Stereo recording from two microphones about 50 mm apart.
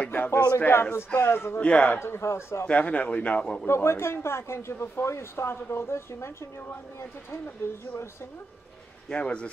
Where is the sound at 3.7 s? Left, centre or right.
Left.